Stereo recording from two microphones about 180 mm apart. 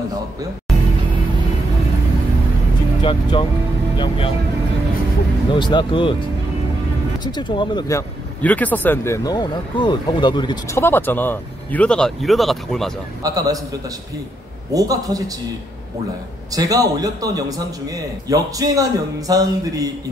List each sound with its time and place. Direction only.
3.0 s speech: 25° left (ahead or behind)
5.5 s speech: 25° left (ahead or behind)
7.3 s speech: 25° left (ahead or behind)
8.4 s speech: 10° left (ahead or behind)
13.2 s a man's voice: 20° right (ahead or behind)
14.7 s a man's voice: 20° right (ahead or behind)
16.5 s a man's voice: 20° right (ahead or behind)